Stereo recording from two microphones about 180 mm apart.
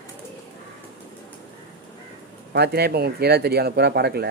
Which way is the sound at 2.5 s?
65° right (ahead or behind).